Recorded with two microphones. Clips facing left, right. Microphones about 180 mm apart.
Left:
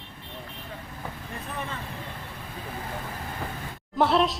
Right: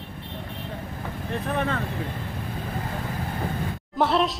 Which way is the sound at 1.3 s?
70° right (ahead or behind).